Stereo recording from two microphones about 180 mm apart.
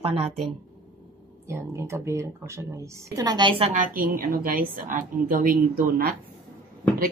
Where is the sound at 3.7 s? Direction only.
50° right (ahead or behind).